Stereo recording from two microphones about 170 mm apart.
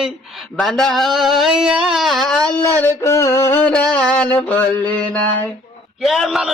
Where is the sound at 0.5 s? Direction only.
Centre (ahead or behind).